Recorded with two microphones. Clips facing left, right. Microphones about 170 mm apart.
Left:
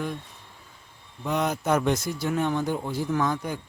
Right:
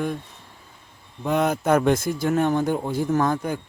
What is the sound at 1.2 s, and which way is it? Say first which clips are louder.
Speech: right 5 dB; 50° right (ahead or behind).